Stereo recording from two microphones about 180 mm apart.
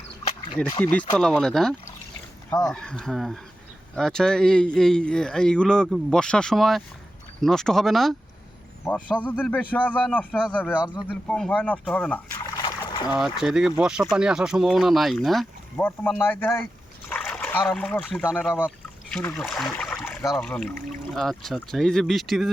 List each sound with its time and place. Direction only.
0.6 s speech: 5° left (ahead or behind)
2.5 s speech: 20° left (ahead or behind)
2.7 s speech: 5° left (ahead or behind)
12.4 s trickle: 20° left (ahead or behind)
13.1 s speech: centre (ahead or behind)
15.8 s speech: 10° left (ahead or behind)